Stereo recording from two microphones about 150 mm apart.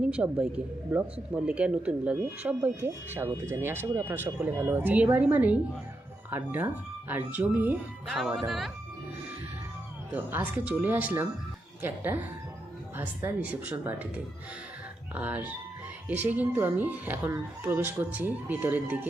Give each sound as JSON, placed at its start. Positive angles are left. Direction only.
{"t": 0.1, "sound": "speech", "side_deg": -10}
{"t": 8.4, "sound": "speech", "side_deg": 0}
{"t": 10.1, "sound": "speech", "side_deg": -10}
{"t": 15.1, "sound": "speech", "side_deg": -10}